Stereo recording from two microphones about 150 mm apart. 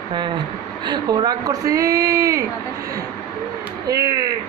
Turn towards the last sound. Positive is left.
turn(degrees=-25)  # may be behind; listen again after turning